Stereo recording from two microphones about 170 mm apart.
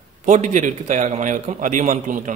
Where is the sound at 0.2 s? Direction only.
50° right (ahead or behind).